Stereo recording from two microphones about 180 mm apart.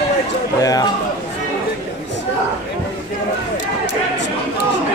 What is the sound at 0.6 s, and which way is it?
Speech, 20° left (ahead or behind).